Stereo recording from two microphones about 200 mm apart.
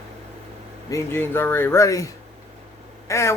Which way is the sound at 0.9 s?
10° left (ahead or behind).